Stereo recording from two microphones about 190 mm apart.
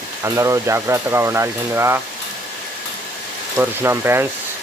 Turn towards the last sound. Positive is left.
turn(degrees=-10)  # may be behind; listen again after turning